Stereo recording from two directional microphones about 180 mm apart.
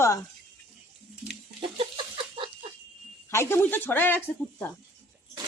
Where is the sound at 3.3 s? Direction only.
15° left (ahead or behind).